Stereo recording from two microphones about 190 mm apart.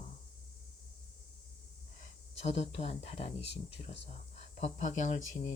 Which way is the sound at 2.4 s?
35° left (ahead or behind).